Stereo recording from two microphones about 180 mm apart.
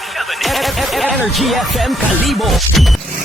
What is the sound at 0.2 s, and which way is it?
Speech, centre (ahead or behind).